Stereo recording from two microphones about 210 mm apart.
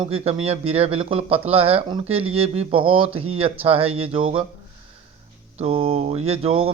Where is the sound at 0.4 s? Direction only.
30° right (ahead or behind).